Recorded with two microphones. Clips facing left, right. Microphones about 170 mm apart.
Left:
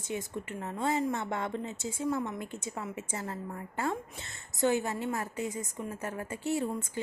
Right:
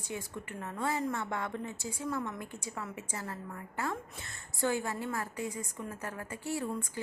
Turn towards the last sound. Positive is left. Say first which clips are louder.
# left 5 dB
turn(degrees=25)  # may be behind; listen again after turning